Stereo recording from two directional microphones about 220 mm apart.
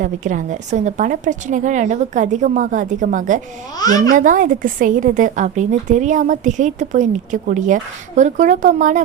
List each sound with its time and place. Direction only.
0.0 s a woman's voice: 35° right (ahead or behind)